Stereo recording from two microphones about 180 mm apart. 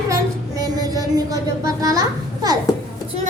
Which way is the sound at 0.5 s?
20° right (ahead or behind).